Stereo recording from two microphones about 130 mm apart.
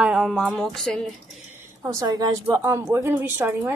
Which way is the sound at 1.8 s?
25° right (ahead or behind).